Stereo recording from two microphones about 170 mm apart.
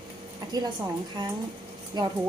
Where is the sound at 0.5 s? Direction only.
25° right (ahead or behind).